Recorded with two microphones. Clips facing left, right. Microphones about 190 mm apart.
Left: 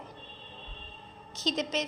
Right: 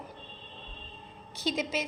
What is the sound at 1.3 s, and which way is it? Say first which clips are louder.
Speech: even; 10° right (ahead or behind).